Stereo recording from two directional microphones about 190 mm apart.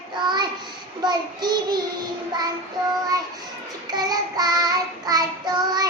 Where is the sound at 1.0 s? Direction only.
20° right (ahead or behind).